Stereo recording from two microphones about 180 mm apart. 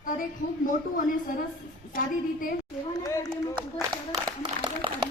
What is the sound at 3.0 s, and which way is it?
Speech, 15° left (ahead or behind).